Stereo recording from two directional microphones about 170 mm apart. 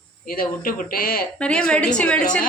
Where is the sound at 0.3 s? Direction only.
55° left (ahead or behind).